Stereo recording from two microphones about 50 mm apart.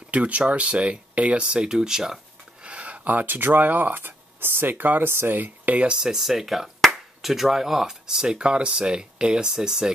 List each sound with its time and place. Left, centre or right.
0.1 s speech: right; by 2.1 s centre
2.6 s speech: right
5.9 s speech: centre